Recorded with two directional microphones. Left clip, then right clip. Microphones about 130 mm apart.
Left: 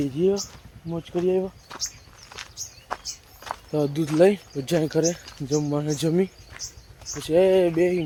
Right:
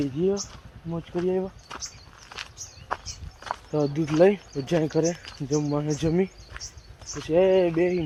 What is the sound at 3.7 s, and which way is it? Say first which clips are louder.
Speech: left 1 dB; 30° left (ahead or behind).